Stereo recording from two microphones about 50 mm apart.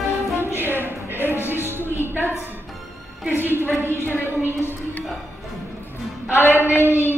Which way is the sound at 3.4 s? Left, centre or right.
Right.